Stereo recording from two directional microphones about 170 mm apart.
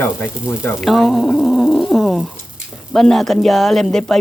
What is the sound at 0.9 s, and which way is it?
Speech, centre (ahead or behind).